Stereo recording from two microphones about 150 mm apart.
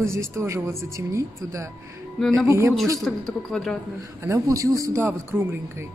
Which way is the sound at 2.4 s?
20° right (ahead or behind).